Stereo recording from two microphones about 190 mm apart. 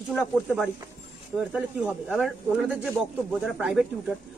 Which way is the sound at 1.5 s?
5° right (ahead or behind).